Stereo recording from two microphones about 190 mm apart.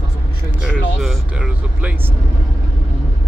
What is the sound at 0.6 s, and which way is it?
Speech, 5° right (ahead or behind).